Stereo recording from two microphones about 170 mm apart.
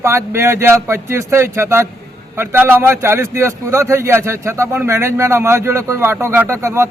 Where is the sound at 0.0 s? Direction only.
15° right (ahead or behind).